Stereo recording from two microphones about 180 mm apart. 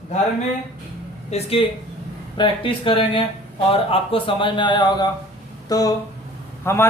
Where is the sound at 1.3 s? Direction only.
30° left (ahead or behind).